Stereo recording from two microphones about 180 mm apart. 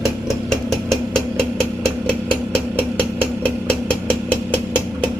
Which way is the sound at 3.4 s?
5° left (ahead or behind).